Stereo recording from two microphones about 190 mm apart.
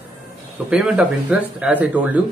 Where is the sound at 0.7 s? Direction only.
5° right (ahead or behind).